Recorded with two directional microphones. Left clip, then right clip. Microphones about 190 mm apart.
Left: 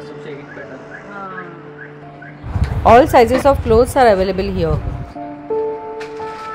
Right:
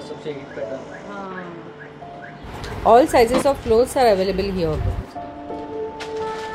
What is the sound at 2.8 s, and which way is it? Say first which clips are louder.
Speech: left 5 dB; 20° left (ahead or behind).